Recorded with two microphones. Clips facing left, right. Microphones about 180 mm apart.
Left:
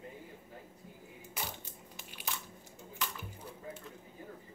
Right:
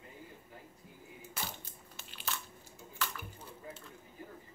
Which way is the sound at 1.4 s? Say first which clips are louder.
Left 1 dB; 15° left (ahead or behind).